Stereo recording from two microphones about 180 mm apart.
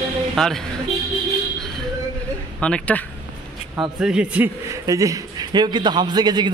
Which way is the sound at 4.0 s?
5° right (ahead or behind).